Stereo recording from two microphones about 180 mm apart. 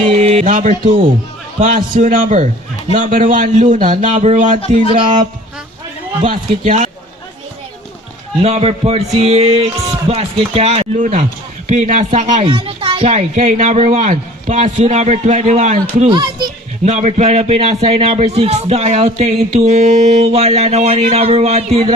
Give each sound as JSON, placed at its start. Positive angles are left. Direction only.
{"t": 0.2, "sound": "music", "side_deg": -35}
{"t": 1.5, "sound": "a man's voice", "side_deg": -45}
{"t": 6.7, "sound": "speech", "side_deg": -45}
{"t": 8.4, "sound": "speech", "side_deg": -35}
{"t": 16.0, "sound": "speech", "side_deg": -25}
{"t": 16.8, "sound": "speech", "side_deg": -40}